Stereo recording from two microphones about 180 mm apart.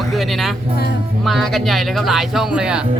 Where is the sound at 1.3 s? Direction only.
Centre (ahead or behind).